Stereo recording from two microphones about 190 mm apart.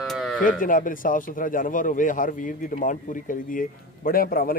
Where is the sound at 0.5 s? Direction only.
45° left (ahead or behind).